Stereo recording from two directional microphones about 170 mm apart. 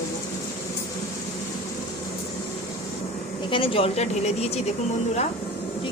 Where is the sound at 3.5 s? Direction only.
30° left (ahead or behind).